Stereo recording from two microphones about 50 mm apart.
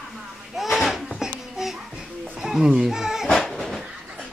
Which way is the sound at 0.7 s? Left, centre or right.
Centre.